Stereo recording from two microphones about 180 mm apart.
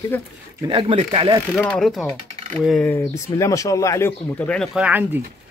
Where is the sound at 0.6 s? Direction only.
30° right (ahead or behind).